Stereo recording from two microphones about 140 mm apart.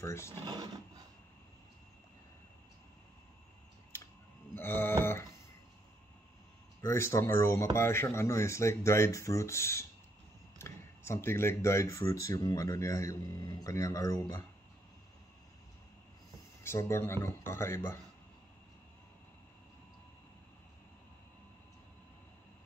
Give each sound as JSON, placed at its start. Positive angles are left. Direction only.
{"t": 0.0, "sound": "speech", "side_deg": 20}
{"t": 0.3, "sound": "speech", "side_deg": -30}
{"t": 4.6, "sound": "speech", "side_deg": 15}
{"t": 6.8, "sound": "speech", "side_deg": 20}
{"t": 16.6, "sound": "speech", "side_deg": 20}